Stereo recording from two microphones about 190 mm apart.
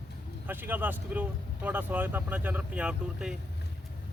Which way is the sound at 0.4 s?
10° right (ahead or behind).